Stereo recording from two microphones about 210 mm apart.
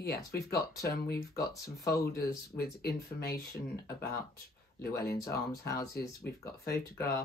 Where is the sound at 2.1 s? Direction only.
50° left (ahead or behind).